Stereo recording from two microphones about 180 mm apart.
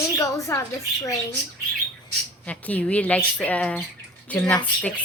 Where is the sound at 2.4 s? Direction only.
5° left (ahead or behind).